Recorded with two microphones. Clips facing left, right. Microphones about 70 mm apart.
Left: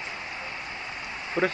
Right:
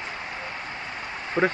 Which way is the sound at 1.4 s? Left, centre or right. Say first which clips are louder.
Right 3 dB; right.